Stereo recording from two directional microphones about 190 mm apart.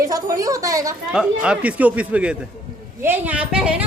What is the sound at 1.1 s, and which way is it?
A woman's voice, 5° right (ahead or behind).